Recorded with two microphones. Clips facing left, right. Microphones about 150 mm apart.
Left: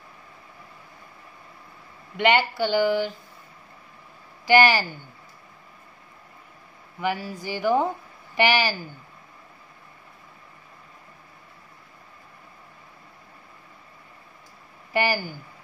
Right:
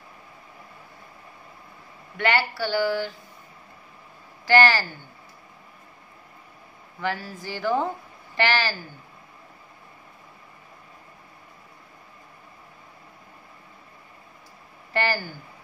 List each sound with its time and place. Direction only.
2.1 s speech: 20° left (ahead or behind)
4.5 s speech: 15° left (ahead or behind)
7.0 s speech: 15° left (ahead or behind)
14.9 s speech: 10° left (ahead or behind)